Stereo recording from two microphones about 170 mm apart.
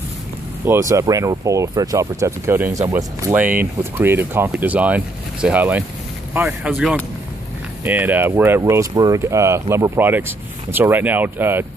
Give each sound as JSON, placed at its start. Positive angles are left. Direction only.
{"t": 0.7, "sound": "speech", "side_deg": -15}